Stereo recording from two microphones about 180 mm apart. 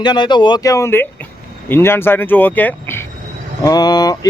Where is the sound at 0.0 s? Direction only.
25° left (ahead or behind).